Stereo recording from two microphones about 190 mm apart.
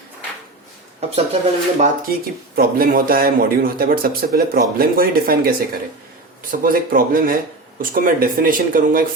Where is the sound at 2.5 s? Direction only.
50° right (ahead or behind).